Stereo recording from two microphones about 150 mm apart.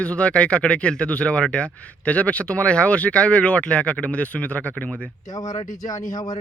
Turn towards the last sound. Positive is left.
turn(degrees=25)  # may be behind; listen again after turning